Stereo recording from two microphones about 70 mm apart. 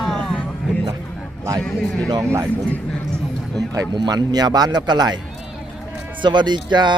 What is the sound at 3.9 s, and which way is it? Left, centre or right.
Speech, right.